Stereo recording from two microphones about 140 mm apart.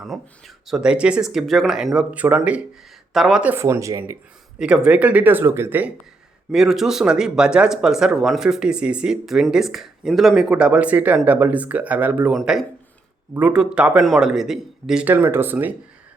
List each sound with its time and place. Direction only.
0.0 s speech: centre (ahead or behind)
3.5 s speech: 20° right (ahead or behind)
4.6 s speech: 5° right (ahead or behind)
6.5 s speech: centre (ahead or behind)
12.3 s speech: centre (ahead or behind)